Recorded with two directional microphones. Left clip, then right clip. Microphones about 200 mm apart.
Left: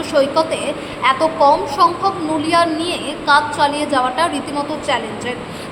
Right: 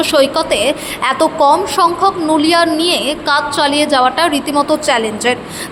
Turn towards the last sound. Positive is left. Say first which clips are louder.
# right 6 dB
turn(degrees=-30)  # may be behind; listen again after turning